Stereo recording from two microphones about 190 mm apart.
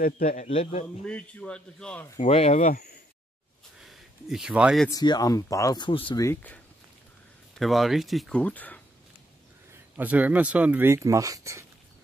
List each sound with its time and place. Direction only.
0.0 s a man's voice: 45° left (ahead or behind)
1.0 s speech: 5° left (ahead or behind)
2.1 s a man's voice: 35° left (ahead or behind)
3.8 s a sound: centre (ahead or behind)
4.8 s speech: 20° left (ahead or behind)
6.2 s speech: 10° left (ahead or behind)
7.5 s speech: centre (ahead or behind)
9.9 s speech: 10° right (ahead or behind)